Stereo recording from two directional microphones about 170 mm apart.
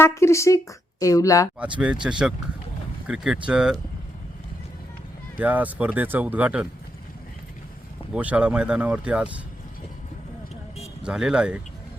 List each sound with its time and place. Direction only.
0.0 s speech: 15° left (ahead or behind)
2.0 s speech: 5° right (ahead or behind)
5.4 s speech: 10° right (ahead or behind)
8.1 s speech: 5° right (ahead or behind)
11.0 s speech: 5° right (ahead or behind)